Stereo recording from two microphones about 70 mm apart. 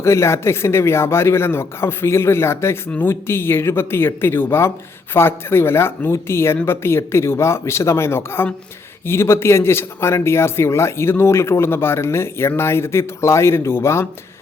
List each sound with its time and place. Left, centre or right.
0.0 s speech: left